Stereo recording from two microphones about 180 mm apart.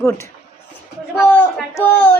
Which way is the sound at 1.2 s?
10° left (ahead or behind).